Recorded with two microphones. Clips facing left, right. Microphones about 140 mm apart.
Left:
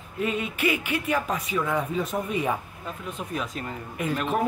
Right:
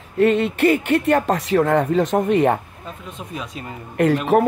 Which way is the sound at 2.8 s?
Centre (ahead or behind).